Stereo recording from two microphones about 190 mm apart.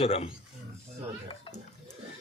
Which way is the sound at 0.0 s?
35° left (ahead or behind).